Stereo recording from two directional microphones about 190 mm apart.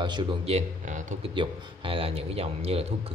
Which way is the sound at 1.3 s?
25° right (ahead or behind).